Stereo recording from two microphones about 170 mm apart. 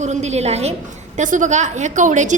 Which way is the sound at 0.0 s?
45° right (ahead or behind).